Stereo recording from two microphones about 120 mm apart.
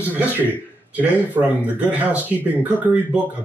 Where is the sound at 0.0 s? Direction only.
15° right (ahead or behind).